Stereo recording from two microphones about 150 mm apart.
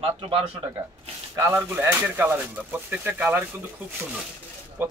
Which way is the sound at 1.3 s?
20° right (ahead or behind).